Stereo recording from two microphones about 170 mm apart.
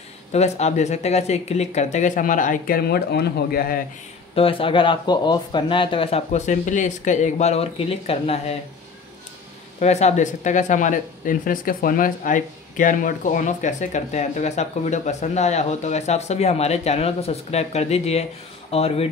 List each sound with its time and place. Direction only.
0.3 s speech: 40° left (ahead or behind); by 3.8 s 60° left (ahead or behind)
4.4 s speech: 30° left (ahead or behind)
9.8 s speech: 40° left (ahead or behind)